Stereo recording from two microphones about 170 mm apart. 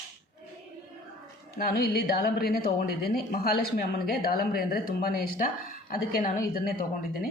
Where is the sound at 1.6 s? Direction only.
65° left (ahead or behind).